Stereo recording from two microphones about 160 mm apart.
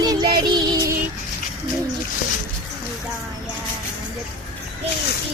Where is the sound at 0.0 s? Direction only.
25° right (ahead or behind).